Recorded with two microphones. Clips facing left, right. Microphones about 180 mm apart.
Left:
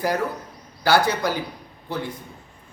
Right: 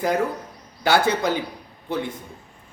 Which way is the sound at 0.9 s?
20° right (ahead or behind).